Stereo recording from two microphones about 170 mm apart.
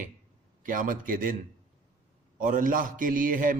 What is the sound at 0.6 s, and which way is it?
Speech, 50° right (ahead or behind).